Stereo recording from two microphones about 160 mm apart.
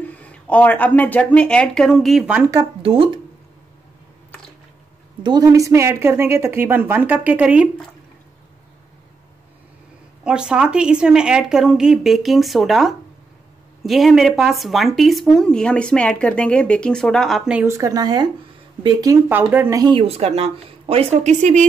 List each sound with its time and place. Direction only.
0.0 s speech: 10° left (ahead or behind)
2.8 s a woman's voice: 35° right (ahead or behind)
5.2 s a woman's voice: 25° right (ahead or behind); by 7.7 s 10° right (ahead or behind)
10.2 s speech: 5° right (ahead or behind)
17.6 s a woman's voice: 20° right (ahead or behind)
19.8 s a woman's voice: 35° right (ahead or behind)